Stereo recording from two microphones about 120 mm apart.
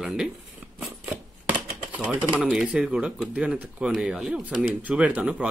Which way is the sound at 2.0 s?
10° right (ahead or behind).